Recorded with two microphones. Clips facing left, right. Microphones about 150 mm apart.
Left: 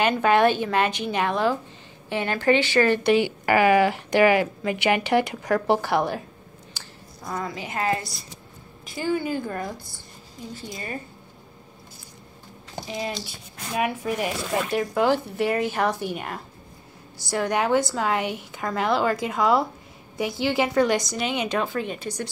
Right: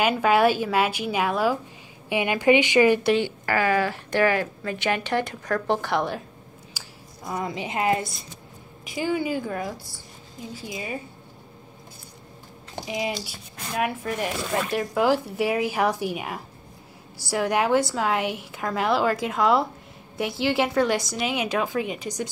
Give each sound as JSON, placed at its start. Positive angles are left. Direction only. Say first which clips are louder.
{"t": 0.0, "sound": "a woman's voice", "louder": "even", "side_deg": -5}
{"t": 3.1, "sound": "a woman's voice", "louder": "left 3 dB", "side_deg": 10}
{"t": 6.7, "sound": "a sound", "louder": "even", "side_deg": -10}
{"t": 8.8, "sound": "a woman's voice", "louder": "even", "side_deg": -10}
{"t": 12.8, "sound": "speech", "louder": "right 2 dB", "side_deg": -15}